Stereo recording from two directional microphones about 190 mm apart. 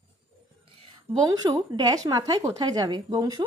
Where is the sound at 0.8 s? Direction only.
20° right (ahead or behind).